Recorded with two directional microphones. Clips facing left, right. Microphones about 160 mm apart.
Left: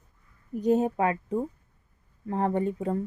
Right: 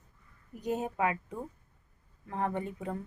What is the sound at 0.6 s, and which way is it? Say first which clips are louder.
Speech: left 8 dB; 35° left (ahead or behind).